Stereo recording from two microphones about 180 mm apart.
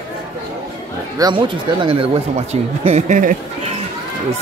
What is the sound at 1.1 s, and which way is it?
Speech, 25° right (ahead or behind).